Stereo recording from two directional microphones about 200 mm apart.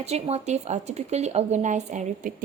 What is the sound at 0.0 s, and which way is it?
Speech, 30° right (ahead or behind).